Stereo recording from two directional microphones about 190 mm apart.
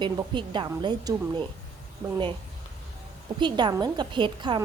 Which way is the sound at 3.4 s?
25° right (ahead or behind).